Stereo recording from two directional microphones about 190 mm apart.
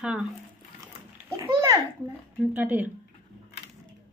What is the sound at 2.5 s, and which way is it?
Speech, 10° right (ahead or behind).